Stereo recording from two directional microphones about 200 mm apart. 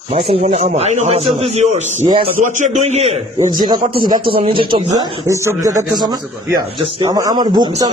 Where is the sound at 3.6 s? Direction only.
20° right (ahead or behind).